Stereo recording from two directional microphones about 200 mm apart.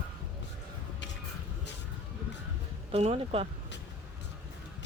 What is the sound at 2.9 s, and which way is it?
Speech, 30° right (ahead or behind).